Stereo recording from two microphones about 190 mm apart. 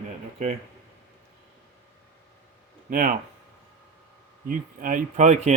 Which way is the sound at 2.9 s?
45° right (ahead or behind).